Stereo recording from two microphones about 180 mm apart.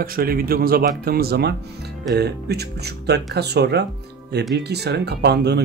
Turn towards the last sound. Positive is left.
turn(degrees=-65)  # may be behind; listen again after turning